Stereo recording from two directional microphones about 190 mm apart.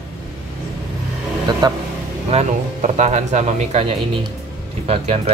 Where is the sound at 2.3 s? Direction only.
35° right (ahead or behind).